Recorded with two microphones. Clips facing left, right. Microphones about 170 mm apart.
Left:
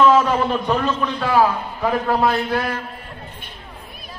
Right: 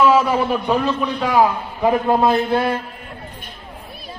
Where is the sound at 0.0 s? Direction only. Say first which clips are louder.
Even; 10° right (ahead or behind); by 2.7 s 25° right (ahead or behind).